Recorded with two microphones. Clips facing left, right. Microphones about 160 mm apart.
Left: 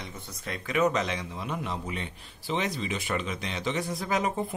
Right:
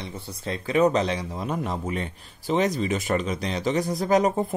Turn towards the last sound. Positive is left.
turn(degrees=-40)  # may be behind; listen again after turning